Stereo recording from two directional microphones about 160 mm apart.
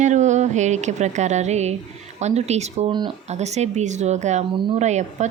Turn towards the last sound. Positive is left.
turn(degrees=-45)  # may be behind; listen again after turning